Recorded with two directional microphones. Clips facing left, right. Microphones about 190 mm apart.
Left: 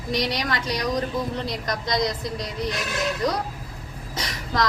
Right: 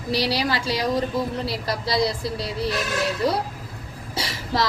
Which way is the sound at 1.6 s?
30° right (ahead or behind).